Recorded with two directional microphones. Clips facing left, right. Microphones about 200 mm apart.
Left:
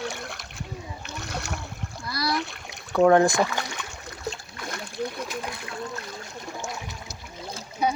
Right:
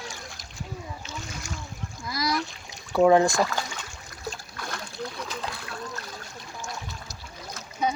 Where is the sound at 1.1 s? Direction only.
70° left (ahead or behind).